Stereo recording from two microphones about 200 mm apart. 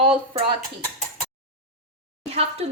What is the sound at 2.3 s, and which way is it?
Speech, 30° right (ahead or behind).